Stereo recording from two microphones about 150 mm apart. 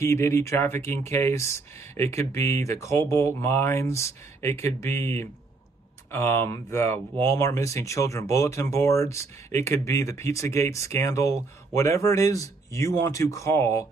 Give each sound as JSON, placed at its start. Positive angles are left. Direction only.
{"t": 0.0, "sound": "speech", "side_deg": 20}